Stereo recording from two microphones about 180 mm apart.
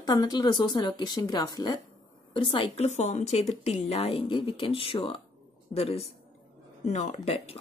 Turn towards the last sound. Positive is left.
turn(degrees=35)  # may be behind; listen again after turning